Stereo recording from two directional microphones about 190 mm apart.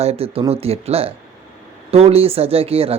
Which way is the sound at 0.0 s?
30° right (ahead or behind).